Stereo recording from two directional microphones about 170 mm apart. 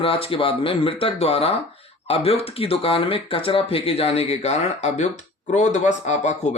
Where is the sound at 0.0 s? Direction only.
30° left (ahead or behind).